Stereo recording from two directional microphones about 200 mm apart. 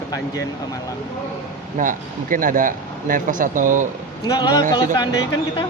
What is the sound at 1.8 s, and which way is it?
Speech, 40° right (ahead or behind).